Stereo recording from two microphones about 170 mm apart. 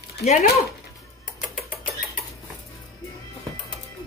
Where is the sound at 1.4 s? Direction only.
50° left (ahead or behind).